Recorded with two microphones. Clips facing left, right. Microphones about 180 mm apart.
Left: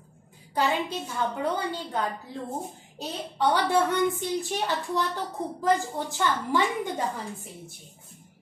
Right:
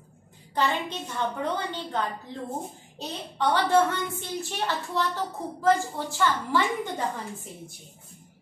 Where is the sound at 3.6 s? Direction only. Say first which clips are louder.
Right 1 dB; 15° left (ahead or behind).